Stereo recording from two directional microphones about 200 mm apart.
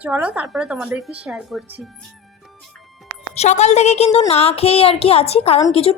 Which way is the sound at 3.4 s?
35° left (ahead or behind).